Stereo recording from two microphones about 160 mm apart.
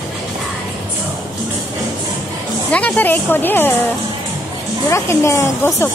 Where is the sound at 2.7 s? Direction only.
10° left (ahead or behind).